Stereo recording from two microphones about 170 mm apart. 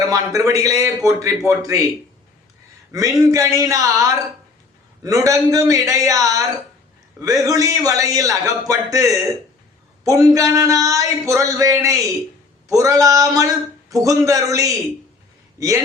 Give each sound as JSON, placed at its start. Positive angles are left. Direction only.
{"t": 0.1, "sound": "speech", "side_deg": -20}
{"t": 2.9, "sound": "a man's voice", "side_deg": -20}